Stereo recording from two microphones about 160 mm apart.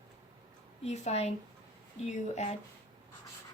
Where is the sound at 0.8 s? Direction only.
45° left (ahead or behind).